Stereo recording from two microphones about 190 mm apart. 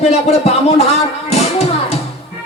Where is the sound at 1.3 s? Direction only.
35° left (ahead or behind).